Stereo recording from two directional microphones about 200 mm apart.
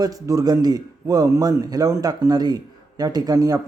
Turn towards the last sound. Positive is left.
turn(degrees=-20)  # may be behind; listen again after turning